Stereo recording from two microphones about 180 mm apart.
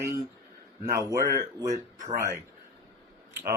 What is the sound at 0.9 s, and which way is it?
Speech, 15° right (ahead or behind).